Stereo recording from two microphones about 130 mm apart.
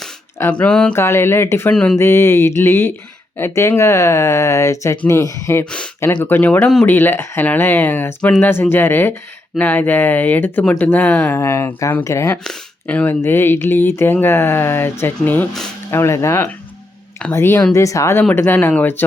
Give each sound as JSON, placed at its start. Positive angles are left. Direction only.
{"t": 0.5, "sound": "speech", "side_deg": 5}
{"t": 0.9, "sound": "speech", "side_deg": 20}
{"t": 1.7, "sound": "speech", "side_deg": 5}
{"t": 2.0, "sound": "speech", "side_deg": 20}
{"t": 12.5, "sound": "speech", "side_deg": 10}